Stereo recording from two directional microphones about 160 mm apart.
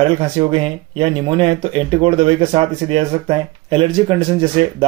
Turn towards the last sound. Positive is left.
turn(degrees=-35)  # may be behind; listen again after turning